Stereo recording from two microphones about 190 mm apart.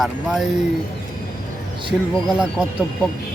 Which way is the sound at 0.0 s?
5° right (ahead or behind).